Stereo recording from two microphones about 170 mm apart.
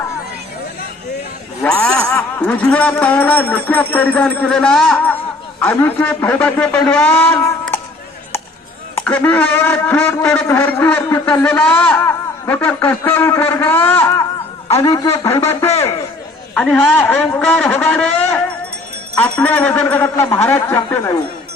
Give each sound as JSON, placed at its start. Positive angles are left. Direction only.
{"t": 1.6, "sound": "a man's voice", "side_deg": 5}
{"t": 3.9, "sound": "a sound", "side_deg": 10}
{"t": 5.5, "sound": "speech", "side_deg": 10}
{"t": 9.0, "sound": "speech", "side_deg": 10}